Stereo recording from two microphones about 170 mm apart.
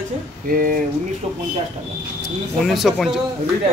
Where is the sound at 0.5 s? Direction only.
55° right (ahead or behind).